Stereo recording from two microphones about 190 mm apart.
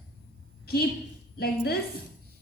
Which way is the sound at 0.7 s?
55° left (ahead or behind).